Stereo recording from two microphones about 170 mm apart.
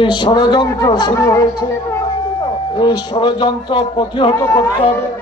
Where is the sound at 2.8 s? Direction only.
25° left (ahead or behind).